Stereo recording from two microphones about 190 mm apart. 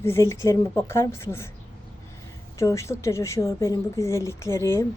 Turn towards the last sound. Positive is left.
turn(degrees=15)  # may be behind; listen again after turning